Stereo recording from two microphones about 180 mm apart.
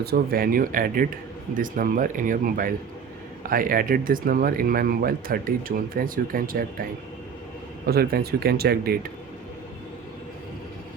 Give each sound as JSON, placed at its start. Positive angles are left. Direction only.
{"t": 0.0, "sound": "speech", "side_deg": -60}
{"t": 7.9, "sound": "speech", "side_deg": -60}